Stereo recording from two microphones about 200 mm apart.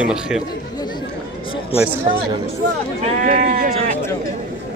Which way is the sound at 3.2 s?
40° right (ahead or behind).